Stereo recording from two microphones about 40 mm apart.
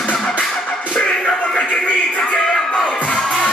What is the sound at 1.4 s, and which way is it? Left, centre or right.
Music, left.